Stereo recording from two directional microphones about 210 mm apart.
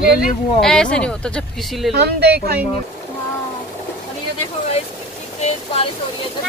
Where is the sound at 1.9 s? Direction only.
50° right (ahead or behind).